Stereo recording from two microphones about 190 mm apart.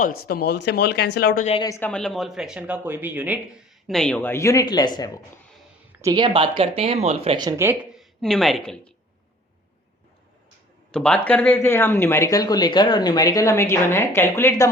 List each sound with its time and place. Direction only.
0.2 s speech: 55° left (ahead or behind)
1.6 s speech: 15° left (ahead or behind)
1.9 s speech: 5° left (ahead or behind)
3.8 s speech: 5° left (ahead or behind); by 5.2 s 20° left (ahead or behind)
6.0 s speech: 20° right (ahead or behind)
7.3 s speech: 15° right (ahead or behind); by 8.9 s 5° left (ahead or behind)
10.9 s speech: 5° left (ahead or behind)